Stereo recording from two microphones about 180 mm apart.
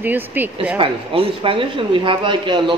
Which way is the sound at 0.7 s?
30° right (ahead or behind).